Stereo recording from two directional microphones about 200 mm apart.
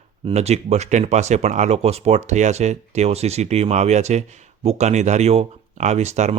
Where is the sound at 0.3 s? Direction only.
30° right (ahead or behind).